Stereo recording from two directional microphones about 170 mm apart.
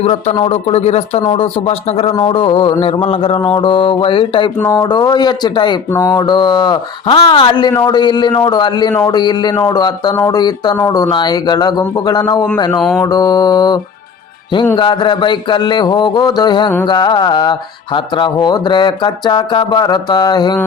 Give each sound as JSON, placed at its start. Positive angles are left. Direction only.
{"t": 0.0, "sound": "speech", "side_deg": 35}
{"t": 14.8, "sound": "speech", "side_deg": 30}